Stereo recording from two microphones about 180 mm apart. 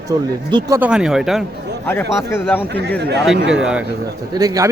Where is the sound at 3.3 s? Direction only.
85° right.